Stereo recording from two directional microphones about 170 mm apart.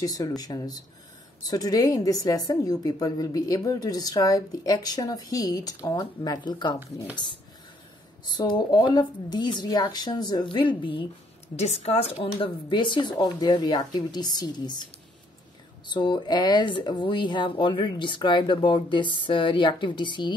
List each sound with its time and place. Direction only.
0.0 s a woman's voice: 20° left (ahead or behind)
8.3 s a woman's voice: 25° left (ahead or behind)
15.9 s a woman's voice: 25° left (ahead or behind)